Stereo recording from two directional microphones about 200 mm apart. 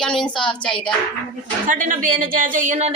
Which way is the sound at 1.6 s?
40° right (ahead or behind).